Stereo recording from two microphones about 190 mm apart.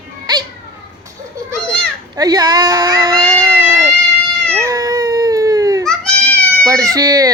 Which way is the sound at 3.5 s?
15° right (ahead or behind).